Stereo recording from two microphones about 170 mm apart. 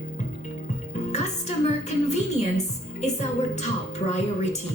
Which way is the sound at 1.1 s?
40° left (ahead or behind).